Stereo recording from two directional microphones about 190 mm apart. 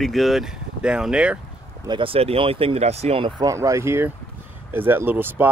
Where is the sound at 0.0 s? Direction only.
Centre (ahead or behind).